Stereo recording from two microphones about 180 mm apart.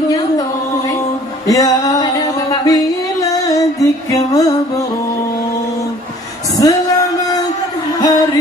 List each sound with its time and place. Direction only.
1.5 s music: 20° left (ahead or behind)
6.6 s music: 20° left (ahead or behind)